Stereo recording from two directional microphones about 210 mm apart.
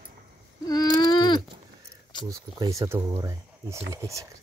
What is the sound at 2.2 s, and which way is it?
Speech, 15° right (ahead or behind).